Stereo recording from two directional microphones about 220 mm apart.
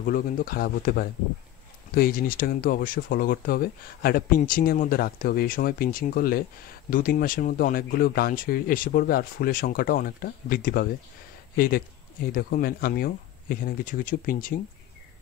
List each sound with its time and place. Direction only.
0.0 s speech: 40° left (ahead or behind)